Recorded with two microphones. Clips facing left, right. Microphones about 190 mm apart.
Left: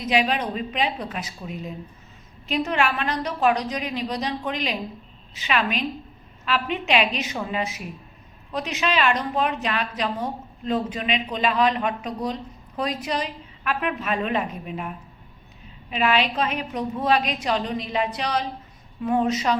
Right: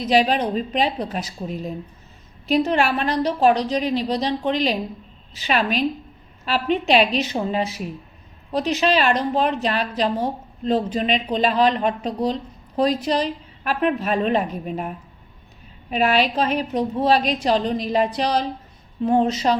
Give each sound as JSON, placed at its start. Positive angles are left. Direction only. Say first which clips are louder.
{"t": 0.0, "sound": "a woman's voice", "louder": "right 4 dB", "side_deg": -35}